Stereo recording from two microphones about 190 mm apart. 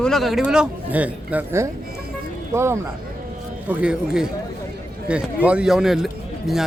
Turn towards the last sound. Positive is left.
turn(degrees=0)  # may be behind; listen again after turning